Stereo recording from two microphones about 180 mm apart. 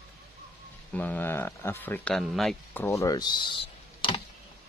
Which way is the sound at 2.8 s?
15° left (ahead or behind).